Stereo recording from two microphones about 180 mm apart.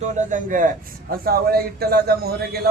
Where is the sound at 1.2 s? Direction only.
55° right (ahead or behind).